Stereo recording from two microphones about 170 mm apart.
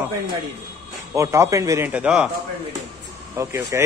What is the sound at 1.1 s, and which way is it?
Speech, 15° right (ahead or behind).